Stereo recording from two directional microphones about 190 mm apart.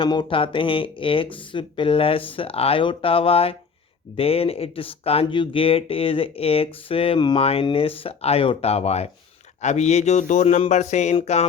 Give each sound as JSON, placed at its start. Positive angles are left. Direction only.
{"t": 0.0, "sound": "speech", "side_deg": 25}